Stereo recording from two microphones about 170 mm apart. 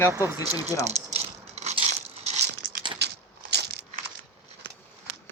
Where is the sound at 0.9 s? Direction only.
40° right (ahead or behind).